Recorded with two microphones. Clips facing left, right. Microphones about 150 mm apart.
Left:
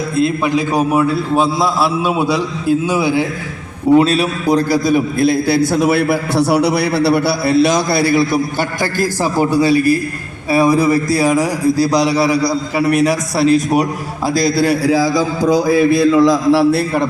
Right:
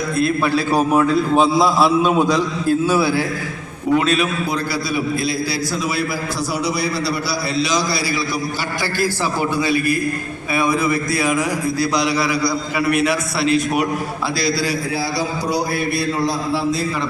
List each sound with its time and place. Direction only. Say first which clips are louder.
0.2 s a man's voice: left 3 dB; 20° left (ahead or behind)
3.9 s a man's voice: left 5 dB; 35° left (ahead or behind); by 8.4 s 55° left (ahead or behind)
8.8 s a man's voice: left 2 dB; 45° left (ahead or behind)
14.3 s a man's voice: left 8 dB; 50° left (ahead or behind)
14.8 s a man's voice: left 10 dB; 90° left
16.1 s a man's voice: left 10 dB; 90° left; by 17.1 s 60° left (ahead or behind)